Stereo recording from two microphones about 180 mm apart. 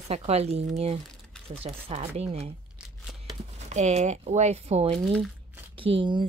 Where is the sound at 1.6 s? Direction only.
30° right (ahead or behind).